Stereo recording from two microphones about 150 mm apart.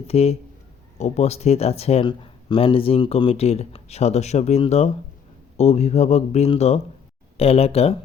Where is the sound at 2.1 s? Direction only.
35° left (ahead or behind).